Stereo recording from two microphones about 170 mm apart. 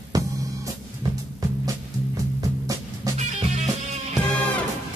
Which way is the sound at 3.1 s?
40° right (ahead or behind).